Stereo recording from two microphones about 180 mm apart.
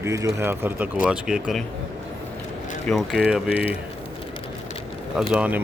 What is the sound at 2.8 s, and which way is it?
Speech, centre (ahead or behind).